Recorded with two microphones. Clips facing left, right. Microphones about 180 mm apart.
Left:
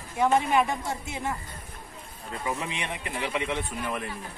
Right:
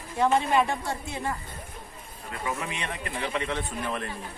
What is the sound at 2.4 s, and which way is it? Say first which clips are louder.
Speech: even; 15° left (ahead or behind).